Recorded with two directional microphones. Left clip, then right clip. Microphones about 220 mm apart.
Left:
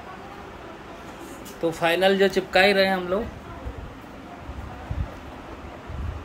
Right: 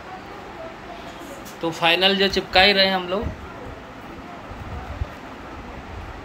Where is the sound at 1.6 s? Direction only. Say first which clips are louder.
Right 2 dB; 20° left (ahead or behind).